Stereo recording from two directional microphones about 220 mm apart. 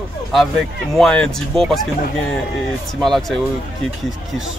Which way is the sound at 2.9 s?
Centre (ahead or behind).